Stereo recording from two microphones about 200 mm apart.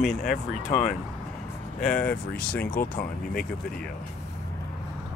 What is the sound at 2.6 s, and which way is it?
Speech, 45° left (ahead or behind).